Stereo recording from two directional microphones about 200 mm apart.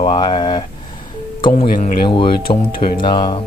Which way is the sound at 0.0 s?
25° left (ahead or behind).